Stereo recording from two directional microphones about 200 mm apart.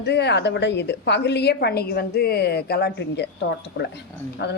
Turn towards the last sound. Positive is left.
turn(degrees=60)  # may be behind; listen again after turning